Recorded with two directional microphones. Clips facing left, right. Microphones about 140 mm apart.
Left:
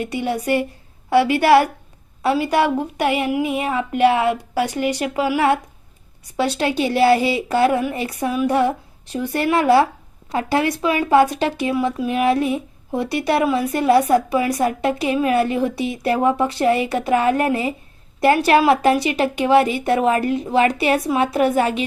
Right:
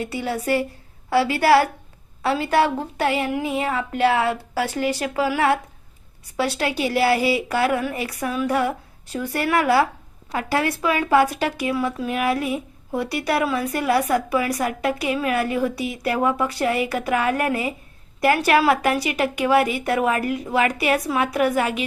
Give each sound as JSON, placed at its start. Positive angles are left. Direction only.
{"t": 0.0, "sound": "speech", "side_deg": 20}